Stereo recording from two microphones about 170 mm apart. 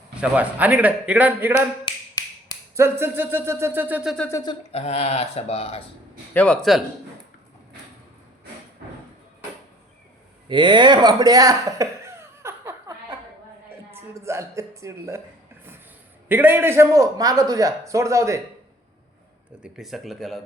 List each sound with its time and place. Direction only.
0.2 s a man's voice: 10° right (ahead or behind)
1.8 s finger snapping: 20° left (ahead or behind)
2.7 s a man's voice: 15° right (ahead or behind)
4.3 s speech: 20° left (ahead or behind)
4.7 s speech: 35° left (ahead or behind)
6.3 s speech: 5° left (ahead or behind)
10.5 s a sound: 25° right (ahead or behind)
13.7 s a woman's voice: 15° right (ahead or behind)
16.3 s a man's voice: 10° right (ahead or behind)
19.6 s speech: centre (ahead or behind)